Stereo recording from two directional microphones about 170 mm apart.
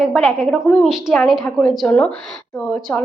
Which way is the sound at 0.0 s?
Centre (ahead or behind).